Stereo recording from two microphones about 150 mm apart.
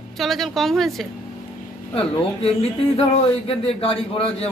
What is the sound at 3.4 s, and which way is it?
A man's voice, 40° left (ahead or behind).